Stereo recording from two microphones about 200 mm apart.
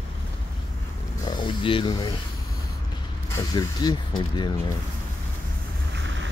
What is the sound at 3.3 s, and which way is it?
Speech, 20° left (ahead or behind).